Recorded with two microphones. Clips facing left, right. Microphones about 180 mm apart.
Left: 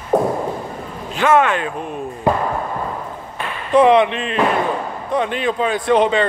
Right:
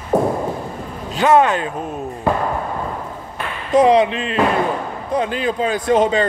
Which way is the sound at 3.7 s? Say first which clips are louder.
Even; 40° right (ahead or behind).